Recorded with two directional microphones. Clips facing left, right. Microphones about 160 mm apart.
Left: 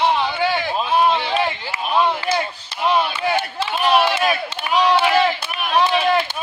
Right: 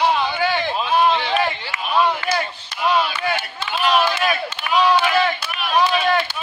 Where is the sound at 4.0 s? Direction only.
30° left (ahead or behind).